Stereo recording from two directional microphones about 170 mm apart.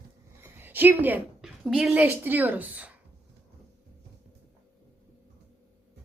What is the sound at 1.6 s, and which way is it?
A woman's voice, centre (ahead or behind).